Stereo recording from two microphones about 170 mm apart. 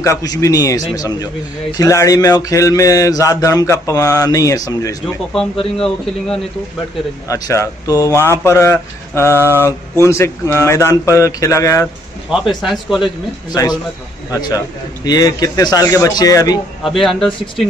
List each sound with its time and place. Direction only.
0.0 s speech: 20° left (ahead or behind)
5.0 s speech: 5° left (ahead or behind)
7.2 s speech: 20° left (ahead or behind)
12.3 s speech: centre (ahead or behind)
14.3 s speech: 20° left (ahead or behind)
16.8 s speech: centre (ahead or behind)